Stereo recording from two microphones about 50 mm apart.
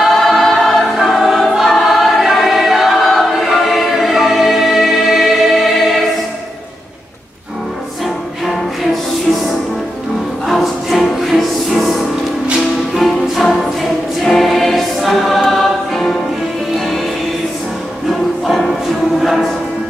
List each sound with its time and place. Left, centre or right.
0.0 s choir: centre
10.4 s music: centre
14.2 s choir: centre
16.7 s music: centre
18.4 s music: centre